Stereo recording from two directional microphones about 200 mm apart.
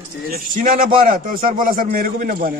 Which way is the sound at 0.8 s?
40° right (ahead or behind).